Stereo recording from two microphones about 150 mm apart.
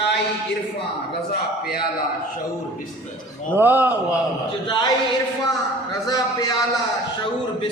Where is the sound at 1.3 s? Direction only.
90° left.